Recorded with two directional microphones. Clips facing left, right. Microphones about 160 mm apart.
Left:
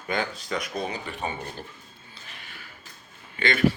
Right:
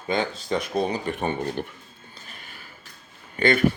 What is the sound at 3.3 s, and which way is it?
Speech, 45° right (ahead or behind).